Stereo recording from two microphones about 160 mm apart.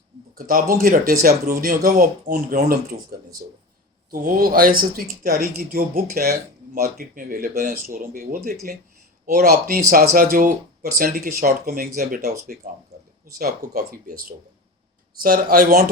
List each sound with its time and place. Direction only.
0.3 s speech: 60° right (ahead or behind)